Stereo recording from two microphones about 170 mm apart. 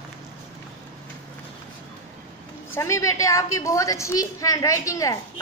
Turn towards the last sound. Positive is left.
turn(degrees=20)  # may be behind; listen again after turning